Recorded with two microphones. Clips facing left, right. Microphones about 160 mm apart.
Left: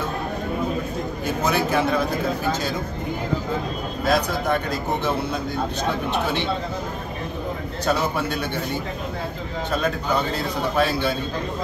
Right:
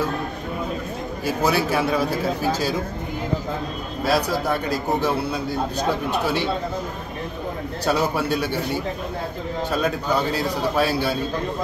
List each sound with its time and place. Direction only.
1.2 s a man's voice: 10° right (ahead or behind)
4.0 s a man's voice: 5° right (ahead or behind)
7.8 s a man's voice: 10° right (ahead or behind)
9.8 s a man's voice: 10° right (ahead or behind)